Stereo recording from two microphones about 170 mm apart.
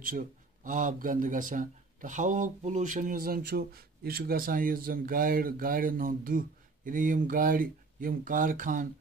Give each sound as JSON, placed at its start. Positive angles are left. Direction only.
{"t": 0.7, "sound": "speech", "side_deg": -50}